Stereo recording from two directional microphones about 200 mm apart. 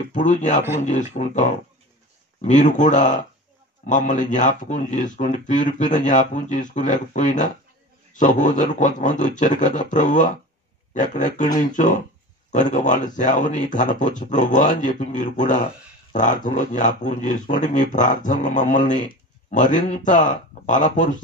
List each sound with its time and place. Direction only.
0.1 s speech: 40° left (ahead or behind)